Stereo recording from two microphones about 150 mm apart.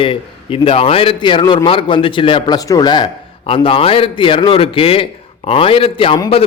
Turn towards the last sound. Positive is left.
turn(degrees=35)  # may be behind; listen again after turning